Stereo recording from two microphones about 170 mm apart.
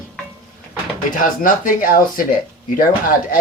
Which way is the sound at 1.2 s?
50° left (ahead or behind).